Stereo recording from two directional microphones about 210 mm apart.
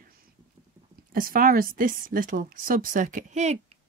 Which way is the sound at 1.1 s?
40° right (ahead or behind).